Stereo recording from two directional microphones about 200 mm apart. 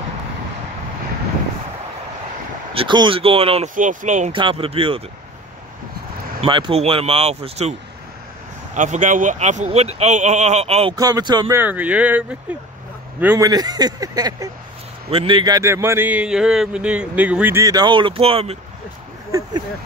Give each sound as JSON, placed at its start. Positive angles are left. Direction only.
{"t": 2.7, "sound": "speech", "side_deg": -25}
{"t": 3.7, "sound": "speech", "side_deg": -40}
{"t": 4.4, "sound": "speech", "side_deg": -25}
{"t": 6.4, "sound": "speech", "side_deg": -25}
{"t": 8.7, "sound": "speech", "side_deg": -40}
{"t": 11.0, "sound": "a man's voice", "side_deg": -20}
{"t": 13.5, "sound": "a man's voice", "side_deg": -20}